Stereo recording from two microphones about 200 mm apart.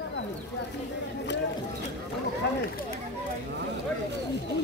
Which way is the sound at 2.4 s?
60° left (ahead or behind).